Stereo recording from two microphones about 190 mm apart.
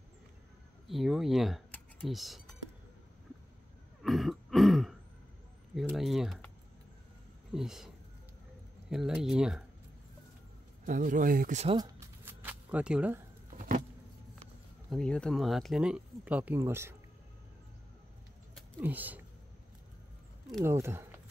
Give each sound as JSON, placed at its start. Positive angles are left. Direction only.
{"t": 0.8, "sound": "speech", "side_deg": 0}
{"t": 4.0, "sound": "throat clearing", "side_deg": 0}
{"t": 5.8, "sound": "speech", "side_deg": 0}
{"t": 7.5, "sound": "speech", "side_deg": 0}
{"t": 8.9, "sound": "speech", "side_deg": -5}
{"t": 10.9, "sound": "speech", "side_deg": -45}
{"t": 11.7, "sound": "a sound", "side_deg": -20}
{"t": 14.9, "sound": "speech", "side_deg": 5}
{"t": 18.8, "sound": "speech", "side_deg": -10}
{"t": 20.6, "sound": "speech", "side_deg": -15}